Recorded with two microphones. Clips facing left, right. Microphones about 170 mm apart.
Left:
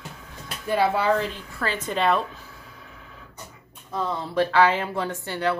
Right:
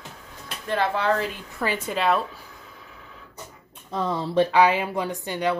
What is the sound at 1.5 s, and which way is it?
Speech, 15° right (ahead or behind).